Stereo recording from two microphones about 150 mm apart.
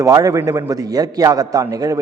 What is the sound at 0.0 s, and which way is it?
A man's voice, 20° right (ahead or behind).